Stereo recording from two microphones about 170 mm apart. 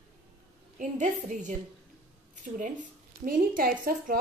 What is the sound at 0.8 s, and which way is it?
Speech, 50° right (ahead or behind).